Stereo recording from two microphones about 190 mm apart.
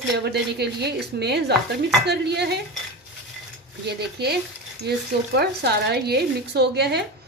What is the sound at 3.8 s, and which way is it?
A woman's voice, 60° right (ahead or behind).